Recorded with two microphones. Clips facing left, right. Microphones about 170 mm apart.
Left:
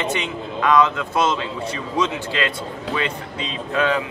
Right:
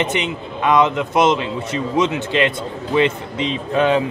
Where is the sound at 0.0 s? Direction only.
20° right (ahead or behind).